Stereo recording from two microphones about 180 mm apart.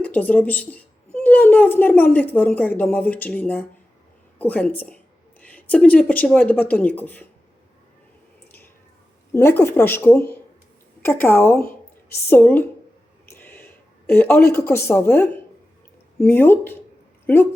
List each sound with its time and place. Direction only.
0.0 s a woman's voice: 10° left (ahead or behind)
9.3 s speech: 15° left (ahead or behind)